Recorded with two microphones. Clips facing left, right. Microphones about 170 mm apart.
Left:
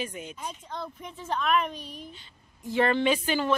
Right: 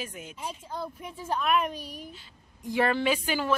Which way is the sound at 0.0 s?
5° right (ahead or behind).